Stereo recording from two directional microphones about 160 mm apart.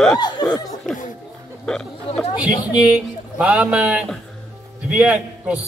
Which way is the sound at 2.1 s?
35° left (ahead or behind).